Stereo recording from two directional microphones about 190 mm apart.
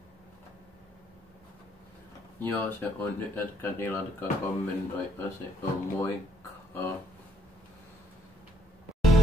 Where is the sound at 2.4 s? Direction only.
10° left (ahead or behind).